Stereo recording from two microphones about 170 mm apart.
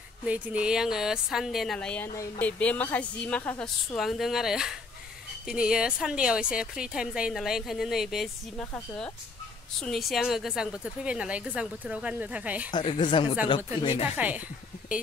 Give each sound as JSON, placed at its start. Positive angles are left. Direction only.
{"t": 0.2, "sound": "a woman's voice", "side_deg": -5}
{"t": 12.7, "sound": "speech", "side_deg": 30}
{"t": 14.1, "sound": "a woman's voice", "side_deg": -10}